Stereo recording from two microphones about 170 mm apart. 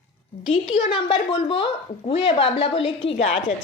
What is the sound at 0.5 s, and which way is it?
Speech, 35° left (ahead or behind).